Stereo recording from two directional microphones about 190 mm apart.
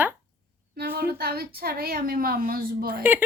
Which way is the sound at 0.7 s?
50° right (ahead or behind).